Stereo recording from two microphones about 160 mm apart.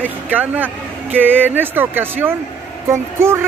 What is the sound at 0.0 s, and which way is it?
Speech, 10° right (ahead or behind).